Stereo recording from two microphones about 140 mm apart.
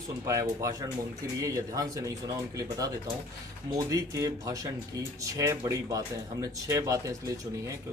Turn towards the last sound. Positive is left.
turn(degrees=-25)  # may be behind; listen again after turning